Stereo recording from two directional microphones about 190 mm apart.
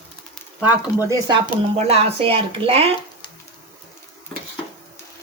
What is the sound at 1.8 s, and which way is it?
Speech, 30° right (ahead or behind).